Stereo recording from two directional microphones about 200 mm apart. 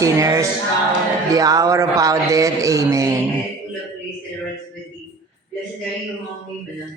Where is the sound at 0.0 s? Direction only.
15° right (ahead or behind).